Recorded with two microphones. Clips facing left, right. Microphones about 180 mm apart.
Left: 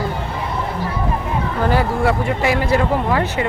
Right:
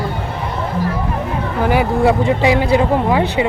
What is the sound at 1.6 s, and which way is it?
Speech, 15° right (ahead or behind).